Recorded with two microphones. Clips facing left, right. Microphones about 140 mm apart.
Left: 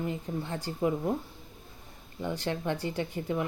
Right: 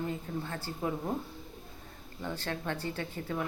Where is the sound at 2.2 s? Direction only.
15° left (ahead or behind).